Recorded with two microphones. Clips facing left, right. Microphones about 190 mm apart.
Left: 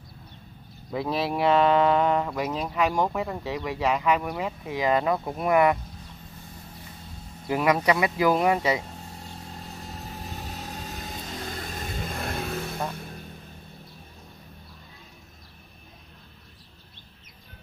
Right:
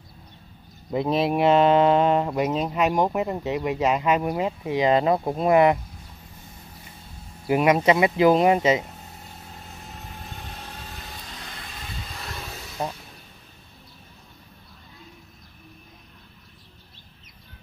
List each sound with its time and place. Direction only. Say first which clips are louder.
0.9 s speech: right 5 dB; 20° right (ahead or behind)
7.4 s speech: right 4 dB; 20° right (ahead or behind)
10.3 s vehicle: left 3 dB; 40° left (ahead or behind); by 12.7 s 55° left (ahead or behind)